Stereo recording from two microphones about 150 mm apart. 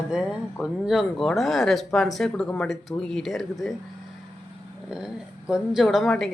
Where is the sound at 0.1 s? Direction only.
5° right (ahead or behind).